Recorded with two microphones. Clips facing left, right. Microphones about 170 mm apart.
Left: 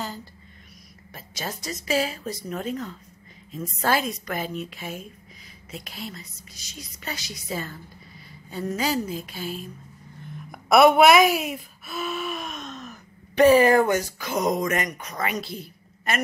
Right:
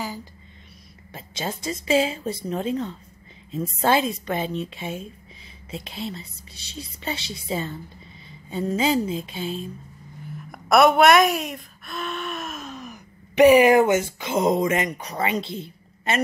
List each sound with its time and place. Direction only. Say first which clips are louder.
0.0 s speech: right 2 dB; 10° right (ahead or behind)
1.1 s speech: right 4 dB; 25° right (ahead or behind)
10.3 s speech: even; centre (ahead or behind); by 16.2 s 25° right (ahead or behind)